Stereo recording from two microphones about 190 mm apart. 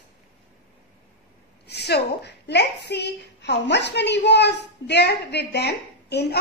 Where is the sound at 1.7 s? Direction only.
60° left (ahead or behind).